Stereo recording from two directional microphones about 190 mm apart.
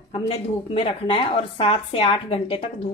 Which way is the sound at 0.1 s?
30° left (ahead or behind).